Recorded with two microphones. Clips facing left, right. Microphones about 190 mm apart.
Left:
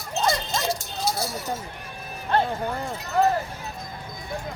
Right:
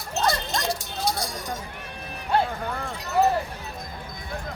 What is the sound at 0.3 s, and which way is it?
Dog, centre (ahead or behind).